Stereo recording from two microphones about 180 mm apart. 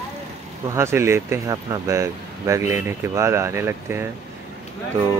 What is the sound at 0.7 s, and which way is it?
Speech, 15° right (ahead or behind).